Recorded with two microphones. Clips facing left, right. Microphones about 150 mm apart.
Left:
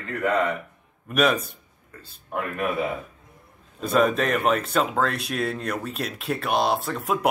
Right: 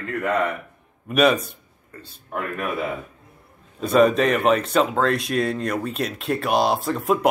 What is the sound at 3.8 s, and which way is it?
Speech, centre (ahead or behind).